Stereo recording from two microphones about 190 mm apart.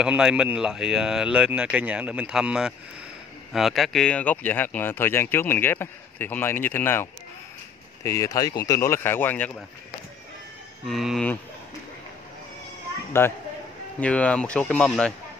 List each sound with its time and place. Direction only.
0.0 s speech: 5° right (ahead or behind)
10.9 s speech: centre (ahead or behind)
13.1 s speech: 10° left (ahead or behind)